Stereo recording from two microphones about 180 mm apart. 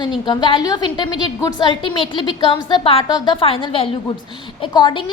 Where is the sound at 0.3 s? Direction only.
25° left (ahead or behind).